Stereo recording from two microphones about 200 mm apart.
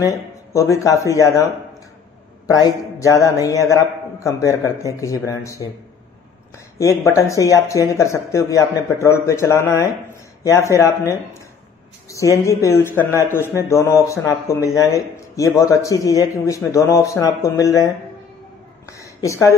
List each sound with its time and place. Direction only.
0.0 s speech: 15° left (ahead or behind)
6.8 s speech: 15° left (ahead or behind)
18.9 s a sound: 15° left (ahead or behind)